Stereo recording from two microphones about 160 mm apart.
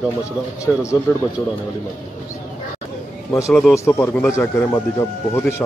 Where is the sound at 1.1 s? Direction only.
15° left (ahead or behind).